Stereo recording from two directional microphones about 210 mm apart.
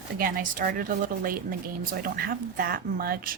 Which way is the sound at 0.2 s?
40° right (ahead or behind).